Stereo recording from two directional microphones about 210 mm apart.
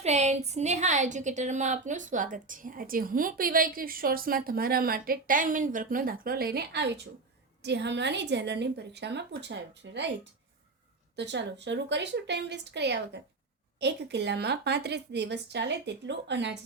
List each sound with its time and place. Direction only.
0.0 s a woman's voice: 30° right (ahead or behind); by 10.0 s 55° right (ahead or behind)
11.2 s a woman's voice: 55° right (ahead or behind)